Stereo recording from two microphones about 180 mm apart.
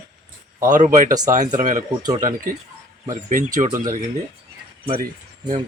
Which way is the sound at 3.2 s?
45° right (ahead or behind).